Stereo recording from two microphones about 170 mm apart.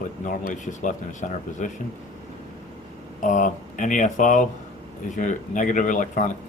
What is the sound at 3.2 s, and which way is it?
Speech, 50° left (ahead or behind).